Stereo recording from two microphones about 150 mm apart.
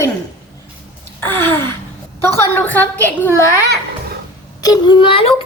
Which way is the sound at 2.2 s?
15° left (ahead or behind).